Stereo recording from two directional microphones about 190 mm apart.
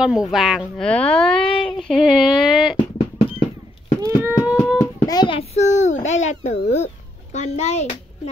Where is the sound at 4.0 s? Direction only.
15° right (ahead or behind).